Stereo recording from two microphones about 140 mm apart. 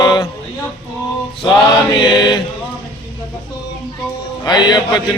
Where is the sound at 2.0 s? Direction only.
30° left (ahead or behind).